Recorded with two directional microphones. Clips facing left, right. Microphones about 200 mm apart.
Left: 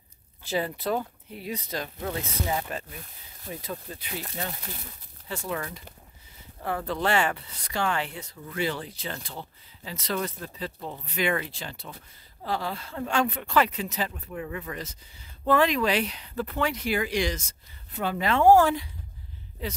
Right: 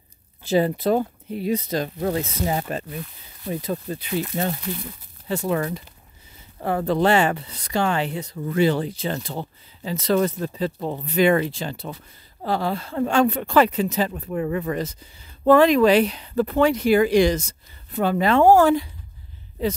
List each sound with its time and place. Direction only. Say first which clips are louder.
0.4 s speech: right 9 dB; 25° right (ahead or behind)
1.7 s speech: right 8 dB; 40° right (ahead or behind)
7.1 s speech: right 6 dB; 25° right (ahead or behind)
8.5 s speech: right 10 dB; 35° right (ahead or behind)
9.1 s speech: right 9 dB; 40° right (ahead or behind)
10.2 s speech: right 10 dB; 45° right (ahead or behind)
11.1 s speech: right 10 dB; 35° right (ahead or behind)
12.5 s speech: right 9 dB; 55° right (ahead or behind)
13.1 s speech: right 6 dB; 35° right (ahead or behind)
16.7 s speech: right 11 dB; 45° right (ahead or behind)
17.4 s speech: right 12 dB; 35° right (ahead or behind)